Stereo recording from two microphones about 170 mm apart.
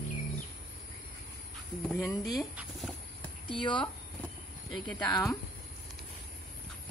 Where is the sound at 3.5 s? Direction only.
30° left (ahead or behind).